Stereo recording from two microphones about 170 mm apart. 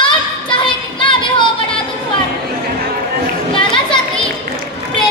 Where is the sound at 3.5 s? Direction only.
30° left (ahead or behind).